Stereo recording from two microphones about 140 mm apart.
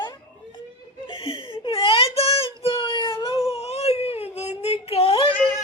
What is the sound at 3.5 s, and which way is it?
Whimper, 50° left (ahead or behind).